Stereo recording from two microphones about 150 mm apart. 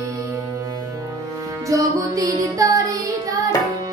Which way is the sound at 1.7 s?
20° right (ahead or behind).